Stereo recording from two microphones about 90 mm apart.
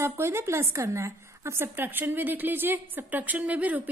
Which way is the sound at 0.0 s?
30° right (ahead or behind).